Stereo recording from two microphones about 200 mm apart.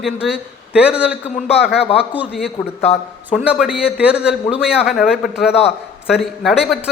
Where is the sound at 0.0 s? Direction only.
5° right (ahead or behind).